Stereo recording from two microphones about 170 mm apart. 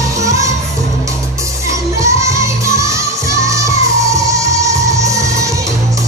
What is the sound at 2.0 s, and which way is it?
Music, 15° right (ahead or behind).